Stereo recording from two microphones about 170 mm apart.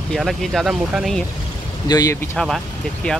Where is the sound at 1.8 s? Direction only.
20° left (ahead or behind).